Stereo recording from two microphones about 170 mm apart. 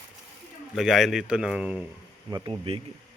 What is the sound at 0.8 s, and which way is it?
Speech, centre (ahead or behind).